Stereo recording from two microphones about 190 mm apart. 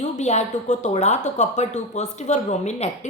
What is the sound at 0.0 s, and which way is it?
Speech, 35° left (ahead or behind).